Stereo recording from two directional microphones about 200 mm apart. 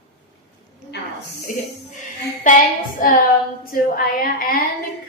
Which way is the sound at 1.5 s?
40° left (ahead or behind).